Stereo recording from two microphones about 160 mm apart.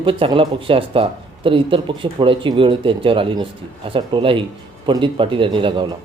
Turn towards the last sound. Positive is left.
turn(degrees=-30)  # may be behind; listen again after turning